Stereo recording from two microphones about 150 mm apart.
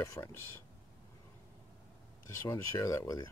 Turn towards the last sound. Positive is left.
turn(degrees=25)  # may be behind; listen again after turning